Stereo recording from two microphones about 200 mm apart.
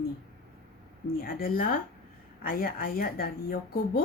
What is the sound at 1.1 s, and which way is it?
Speech, 45° left (ahead or behind).